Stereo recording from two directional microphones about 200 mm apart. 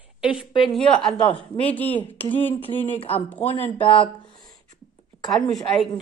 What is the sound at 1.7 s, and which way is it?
Speech, 10° left (ahead or behind).